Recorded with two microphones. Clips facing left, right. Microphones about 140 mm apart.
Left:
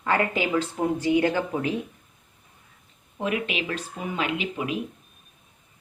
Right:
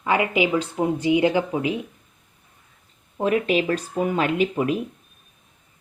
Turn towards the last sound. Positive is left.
turn(degrees=-45)  # may be behind; listen again after turning